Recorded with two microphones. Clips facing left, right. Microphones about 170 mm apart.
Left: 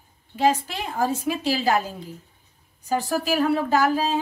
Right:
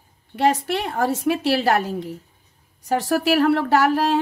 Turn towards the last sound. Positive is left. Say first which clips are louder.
# right 3 dB
turn(degrees=-70)  # may be behind; listen again after turning